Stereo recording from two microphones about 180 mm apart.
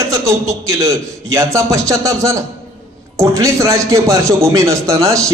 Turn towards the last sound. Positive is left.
turn(degrees=-15)  # may be behind; listen again after turning